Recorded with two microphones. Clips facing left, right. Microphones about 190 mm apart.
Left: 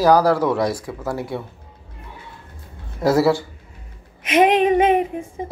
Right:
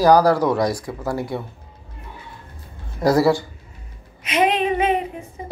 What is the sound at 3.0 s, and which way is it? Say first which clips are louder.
Speech: even; 5° left (ahead or behind).